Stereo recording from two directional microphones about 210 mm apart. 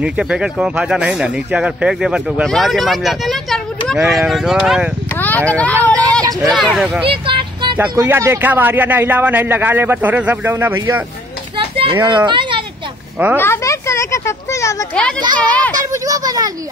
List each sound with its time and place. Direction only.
0.0 s speech: 5° right (ahead or behind)
5.1 s vehicle: 10° left (ahead or behind)
5.5 s speech: 5° left (ahead or behind)
7.2 s vehicle: 25° right (ahead or behind)
7.9 s speech: 15° right (ahead or behind)
11.5 s children playing: 25° right (ahead or behind)
12.3 s a sound: 25° right (ahead or behind)
13.4 s speech: 15° left (ahead or behind)
15.8 s speech: 15° right (ahead or behind)